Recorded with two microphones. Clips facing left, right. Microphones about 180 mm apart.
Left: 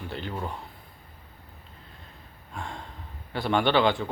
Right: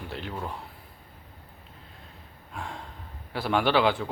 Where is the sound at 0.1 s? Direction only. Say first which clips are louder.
Left 2 dB; centre (ahead or behind).